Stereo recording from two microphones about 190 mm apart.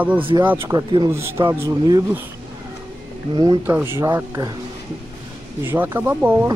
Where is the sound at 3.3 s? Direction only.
20° right (ahead or behind).